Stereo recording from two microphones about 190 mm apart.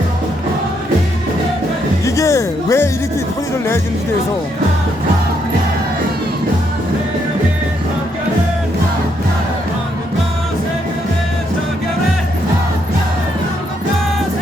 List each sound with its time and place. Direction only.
2.0 s music: 15° left (ahead or behind)